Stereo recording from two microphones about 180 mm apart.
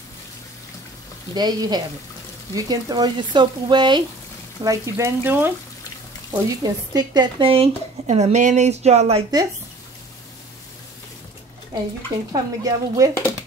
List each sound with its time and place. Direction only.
1.3 s speech: 25° right (ahead or behind)
12.3 s speech: 20° right (ahead or behind)